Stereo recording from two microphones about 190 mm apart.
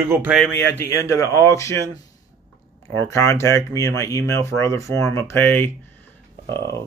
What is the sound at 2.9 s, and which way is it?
Speech, 15° left (ahead or behind).